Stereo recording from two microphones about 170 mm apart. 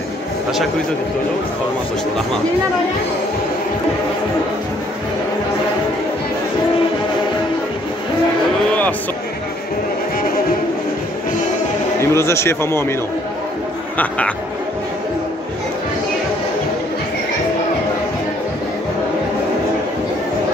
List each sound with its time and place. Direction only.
12.0 s speech: 15° left (ahead or behind)
13.9 s speech: 5° left (ahead or behind)